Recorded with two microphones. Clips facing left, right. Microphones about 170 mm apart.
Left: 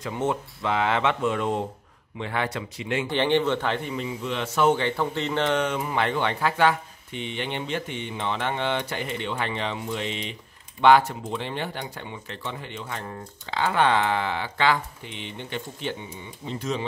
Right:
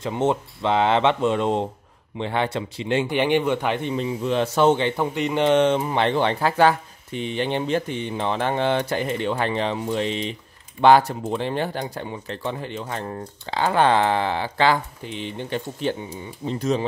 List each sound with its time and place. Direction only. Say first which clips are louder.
0.0 s a man's voice: right 5 dB; 25° right (ahead or behind)
3.1 s speech: even; 15° right (ahead or behind)
3.9 s a man's voice: right 6 dB; 35° right (ahead or behind)